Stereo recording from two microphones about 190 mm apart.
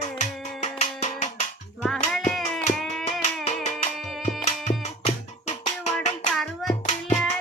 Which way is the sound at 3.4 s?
40° left (ahead or behind).